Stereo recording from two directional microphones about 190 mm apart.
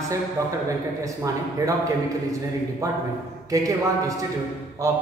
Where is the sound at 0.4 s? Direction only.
15° right (ahead or behind).